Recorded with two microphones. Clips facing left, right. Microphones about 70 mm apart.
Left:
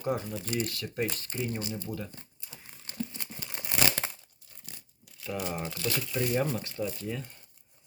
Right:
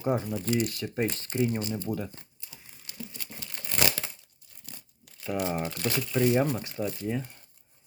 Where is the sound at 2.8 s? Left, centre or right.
Left.